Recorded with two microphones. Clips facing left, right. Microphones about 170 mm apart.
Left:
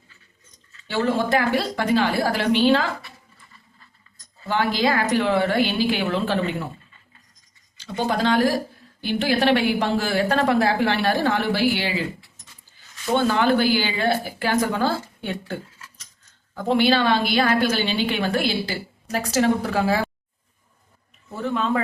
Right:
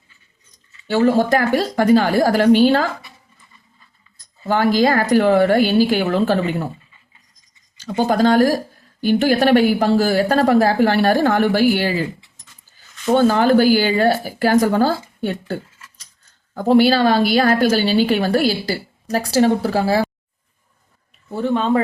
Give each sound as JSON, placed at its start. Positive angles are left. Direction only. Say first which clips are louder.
{"t": 0.9, "sound": "a woman's voice", "louder": "right 7 dB", "side_deg": -40}
{"t": 4.4, "sound": "a woman's voice", "louder": "right 6 dB", "side_deg": -45}
{"t": 7.8, "sound": "a woman's voice", "louder": "right 7 dB", "side_deg": -40}
{"t": 13.1, "sound": "a woman's voice", "louder": "right 5 dB", "side_deg": -40}
{"t": 16.6, "sound": "a woman's voice", "louder": "right 6 dB", "side_deg": -40}
{"t": 21.2, "sound": "a woman's voice", "louder": "right 6 dB", "side_deg": -30}